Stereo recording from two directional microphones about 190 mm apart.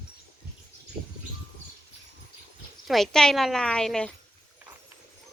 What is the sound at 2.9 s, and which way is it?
A woman's voice, centre (ahead or behind).